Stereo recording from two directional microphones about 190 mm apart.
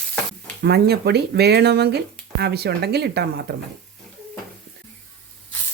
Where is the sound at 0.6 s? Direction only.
60° right (ahead or behind).